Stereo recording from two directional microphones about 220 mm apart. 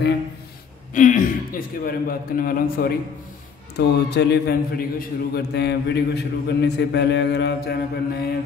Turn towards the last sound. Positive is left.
turn(degrees=50)  # may be behind; listen again after turning